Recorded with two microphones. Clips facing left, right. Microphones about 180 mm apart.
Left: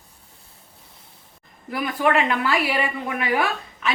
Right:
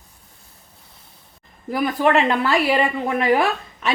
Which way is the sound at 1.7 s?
40° right (ahead or behind).